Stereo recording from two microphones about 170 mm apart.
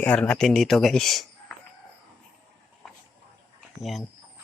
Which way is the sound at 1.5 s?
5° left (ahead or behind).